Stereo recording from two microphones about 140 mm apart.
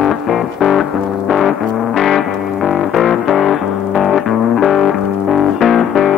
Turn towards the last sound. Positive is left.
turn(degrees=0)  # may be behind; listen again after turning